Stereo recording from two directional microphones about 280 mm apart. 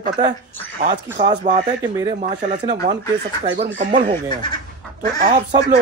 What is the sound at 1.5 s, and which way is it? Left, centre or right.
Speech, right.